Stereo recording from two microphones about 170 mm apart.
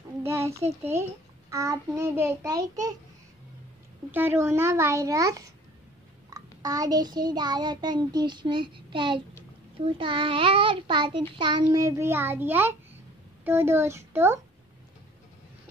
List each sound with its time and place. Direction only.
0.2 s child singing: 15° right (ahead or behind)
1.5 s a child's voice: 20° right (ahead or behind)
4.1 s a child's voice: 10° right (ahead or behind)
6.3 s child singing: 20° right (ahead or behind)
13.4 s a child's voice: 15° right (ahead or behind)